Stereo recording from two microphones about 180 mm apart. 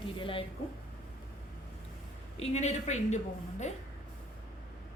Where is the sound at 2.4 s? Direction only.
40° left (ahead or behind).